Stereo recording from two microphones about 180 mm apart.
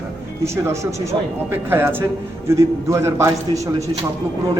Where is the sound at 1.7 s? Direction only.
10° right (ahead or behind).